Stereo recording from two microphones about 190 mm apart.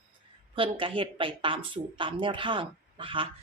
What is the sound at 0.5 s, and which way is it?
A woman's voice, 30° right (ahead or behind).